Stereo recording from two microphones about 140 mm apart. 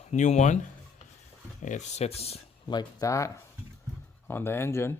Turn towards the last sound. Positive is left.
turn(degrees=20)  # may be behind; listen again after turning